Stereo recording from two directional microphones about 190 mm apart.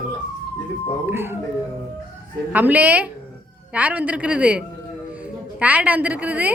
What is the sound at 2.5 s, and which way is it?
A woman's voice, 10° right (ahead or behind).